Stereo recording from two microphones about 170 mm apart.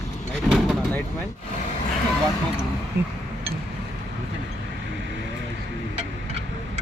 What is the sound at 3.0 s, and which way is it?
Speech, 75° right (ahead or behind).